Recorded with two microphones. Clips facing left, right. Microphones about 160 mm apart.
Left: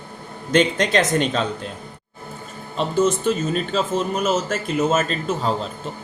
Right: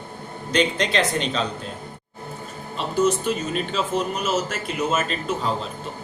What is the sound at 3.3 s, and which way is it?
Speech, 45° left (ahead or behind).